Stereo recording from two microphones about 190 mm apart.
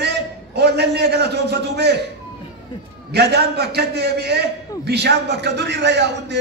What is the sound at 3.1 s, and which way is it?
A man's voice, 60° right (ahead or behind).